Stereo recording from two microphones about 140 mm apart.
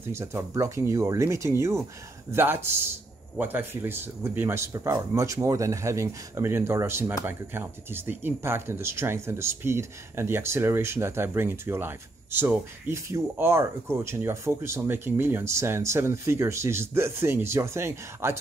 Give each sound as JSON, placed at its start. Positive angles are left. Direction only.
{"t": 0.0, "sound": "speech", "side_deg": -20}